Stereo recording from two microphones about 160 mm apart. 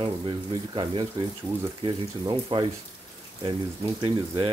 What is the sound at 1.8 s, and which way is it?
Speech, 30° right (ahead or behind).